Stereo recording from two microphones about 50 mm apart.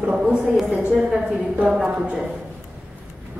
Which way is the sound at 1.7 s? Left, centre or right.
Centre.